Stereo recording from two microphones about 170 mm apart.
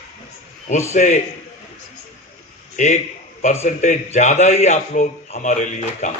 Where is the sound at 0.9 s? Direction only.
45° left (ahead or behind).